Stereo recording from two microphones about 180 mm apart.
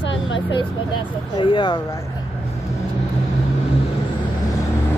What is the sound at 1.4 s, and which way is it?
Speech, 25° left (ahead or behind).